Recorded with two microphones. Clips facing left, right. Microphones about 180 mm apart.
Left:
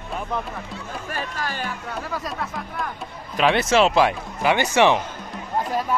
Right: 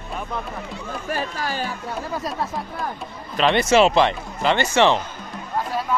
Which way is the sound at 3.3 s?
5° left (ahead or behind).